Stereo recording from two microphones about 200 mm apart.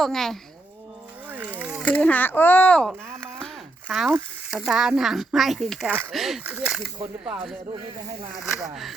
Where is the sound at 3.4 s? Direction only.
5° left (ahead or behind).